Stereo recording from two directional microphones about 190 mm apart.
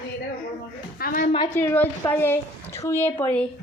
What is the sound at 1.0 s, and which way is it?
Speech, 45° left (ahead or behind).